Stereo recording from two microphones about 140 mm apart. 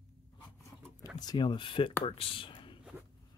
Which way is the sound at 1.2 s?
35° left (ahead or behind).